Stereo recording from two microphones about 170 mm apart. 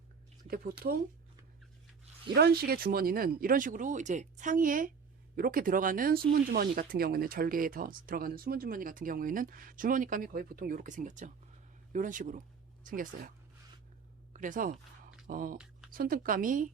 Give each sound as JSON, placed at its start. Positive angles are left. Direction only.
{"t": 0.4, "sound": "speech", "side_deg": -60}
{"t": 2.3, "sound": "speech", "side_deg": -65}
{"t": 14.3, "sound": "speech", "side_deg": -50}